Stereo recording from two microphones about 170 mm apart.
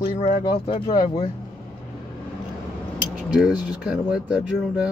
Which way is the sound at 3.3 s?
5° right (ahead or behind).